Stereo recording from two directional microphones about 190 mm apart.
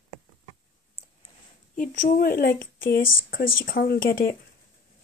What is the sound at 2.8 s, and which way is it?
Speech, 80° left.